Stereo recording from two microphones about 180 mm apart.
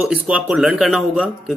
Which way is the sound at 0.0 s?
5° right (ahead or behind).